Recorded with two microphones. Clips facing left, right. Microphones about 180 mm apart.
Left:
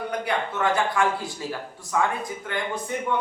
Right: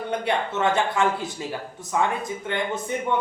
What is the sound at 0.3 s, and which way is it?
A man's voice, 25° right (ahead or behind).